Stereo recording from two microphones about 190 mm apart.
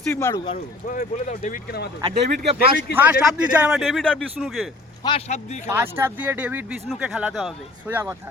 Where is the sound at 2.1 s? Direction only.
30° right (ahead or behind).